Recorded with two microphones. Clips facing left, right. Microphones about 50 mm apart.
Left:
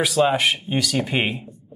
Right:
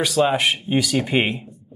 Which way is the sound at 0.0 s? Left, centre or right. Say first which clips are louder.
Even; centre.